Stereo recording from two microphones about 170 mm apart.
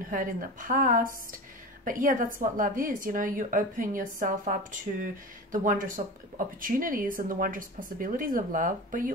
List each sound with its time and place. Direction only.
0.1 s a woman's voice: 55° right (ahead or behind)